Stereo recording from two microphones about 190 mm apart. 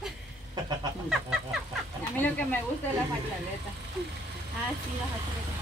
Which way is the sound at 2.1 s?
10° left (ahead or behind).